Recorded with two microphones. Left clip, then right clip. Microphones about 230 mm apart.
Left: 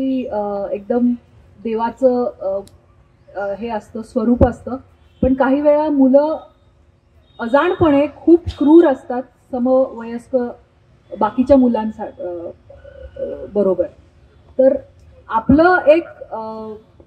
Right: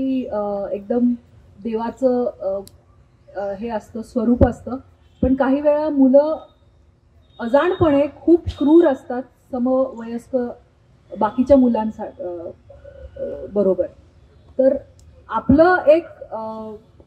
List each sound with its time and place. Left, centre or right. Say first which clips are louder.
0.1 s a woman's voice: left 2 dB; left
13.5 s a woman's voice: left 2 dB; left
15.2 s a woman's voice: left 2 dB; left